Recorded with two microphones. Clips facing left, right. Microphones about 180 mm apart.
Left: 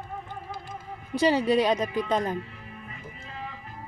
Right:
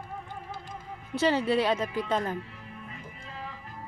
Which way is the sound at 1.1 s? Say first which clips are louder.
Left 3 dB; 15° left (ahead or behind).